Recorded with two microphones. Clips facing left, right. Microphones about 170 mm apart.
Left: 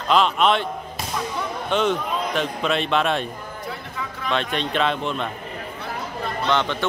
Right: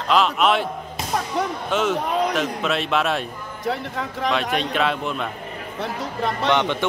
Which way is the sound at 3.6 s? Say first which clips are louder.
Right 9 dB; 80° right.